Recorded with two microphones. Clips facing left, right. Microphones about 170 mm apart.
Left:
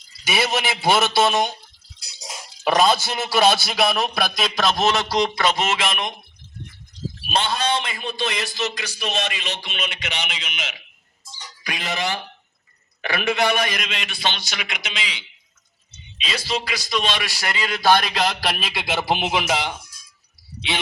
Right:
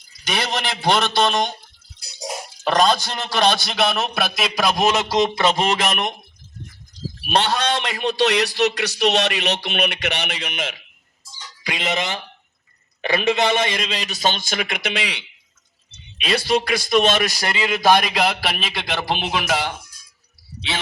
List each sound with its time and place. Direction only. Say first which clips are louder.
0.3 s a man's voice: left 2 dB; 5° left (ahead or behind)
2.6 s a man's voice: even; 10° left (ahead or behind); by 6.1 s 45° right (ahead or behind)
7.3 s a man's voice: right 3 dB; 70° right (ahead or behind); by 10.8 s 55° right (ahead or behind)
11.6 s a man's voice: right 2 dB; 25° right (ahead or behind); by 17.5 s 40° right (ahead or behind)
17.5 s a man's voice: right 1 dB; 20° right (ahead or behind); by 19.7 s 15° left (ahead or behind)